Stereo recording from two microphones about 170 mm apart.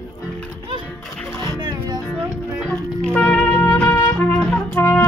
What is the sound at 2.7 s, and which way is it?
Music, 10° left (ahead or behind).